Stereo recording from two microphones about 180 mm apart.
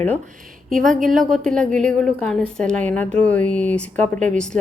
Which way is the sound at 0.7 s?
45° right (ahead or behind).